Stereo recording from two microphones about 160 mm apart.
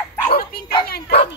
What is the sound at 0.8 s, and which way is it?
Bow-wow, 75° left (ahead or behind).